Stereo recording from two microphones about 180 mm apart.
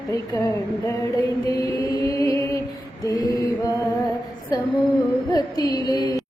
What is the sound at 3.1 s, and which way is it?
Mantra, 20° left (ahead or behind).